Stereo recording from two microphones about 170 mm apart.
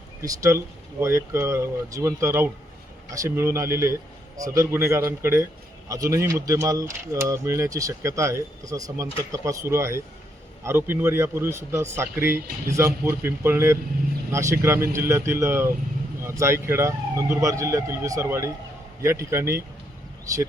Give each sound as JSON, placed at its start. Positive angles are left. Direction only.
{"t": 0.2, "sound": "a man's voice", "side_deg": -15}